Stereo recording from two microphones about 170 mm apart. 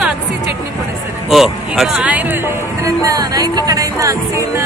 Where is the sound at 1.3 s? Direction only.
Centre (ahead or behind).